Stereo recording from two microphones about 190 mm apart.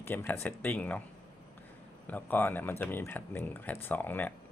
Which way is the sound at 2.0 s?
10° left (ahead or behind).